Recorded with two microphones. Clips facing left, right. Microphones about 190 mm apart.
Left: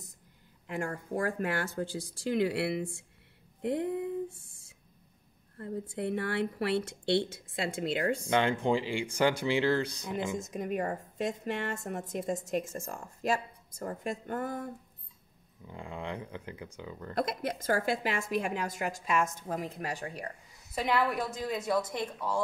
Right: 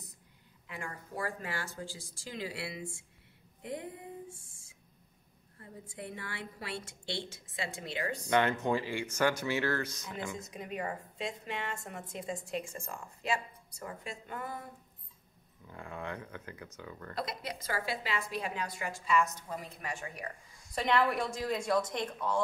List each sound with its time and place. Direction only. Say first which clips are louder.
0.7 s a woman's voice: left 9 dB; 50° left (ahead or behind); by 4.1 s 65° left (ahead or behind)
5.6 s a woman's voice: left 10 dB; 65° left (ahead or behind)
8.3 s speech: even; 20° left (ahead or behind)
10.4 s a woman's voice: left 6 dB; 45° left (ahead or behind)
15.6 s speech: left 2 dB; 15° left (ahead or behind)
17.1 s a woman's voice: left 7 dB; 50° left (ahead or behind)
20.6 s speech: even; 5° left (ahead or behind)